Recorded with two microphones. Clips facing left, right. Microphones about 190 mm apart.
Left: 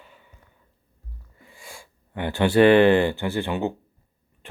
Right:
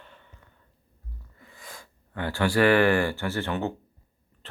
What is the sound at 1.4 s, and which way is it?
Speech, 10° left (ahead or behind).